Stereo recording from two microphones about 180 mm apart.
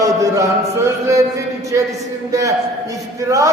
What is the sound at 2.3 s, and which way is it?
Speech, 15° right (ahead or behind).